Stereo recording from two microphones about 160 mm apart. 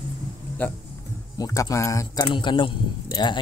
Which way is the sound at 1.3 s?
20° left (ahead or behind).